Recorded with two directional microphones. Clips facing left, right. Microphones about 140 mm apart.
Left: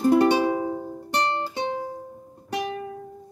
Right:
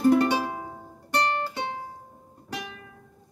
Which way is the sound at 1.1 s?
20° left (ahead or behind).